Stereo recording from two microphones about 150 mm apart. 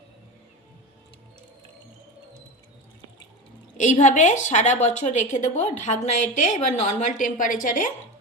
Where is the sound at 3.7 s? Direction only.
55° left (ahead or behind).